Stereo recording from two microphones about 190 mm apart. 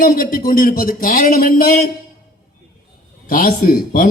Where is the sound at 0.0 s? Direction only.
50° left (ahead or behind).